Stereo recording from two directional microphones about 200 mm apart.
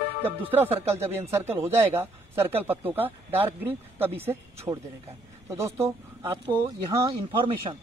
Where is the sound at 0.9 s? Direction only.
15° right (ahead or behind).